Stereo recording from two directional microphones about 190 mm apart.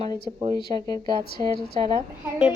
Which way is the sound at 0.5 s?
20° left (ahead or behind).